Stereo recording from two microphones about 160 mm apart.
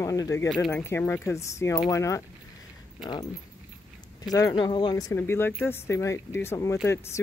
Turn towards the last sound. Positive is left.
turn(degrees=15)  # may be behind; listen again after turning